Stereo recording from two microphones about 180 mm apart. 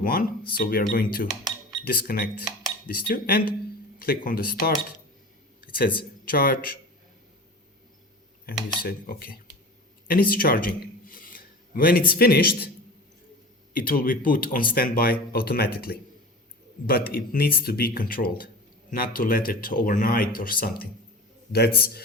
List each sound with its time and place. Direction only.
0.0 s speech: 55° left (ahead or behind)
5.5 s a sound: 55° left (ahead or behind)
6.2 s speech: 55° left (ahead or behind)
8.8 s a man's voice: 55° left (ahead or behind)
13.7 s speech: 50° left (ahead or behind)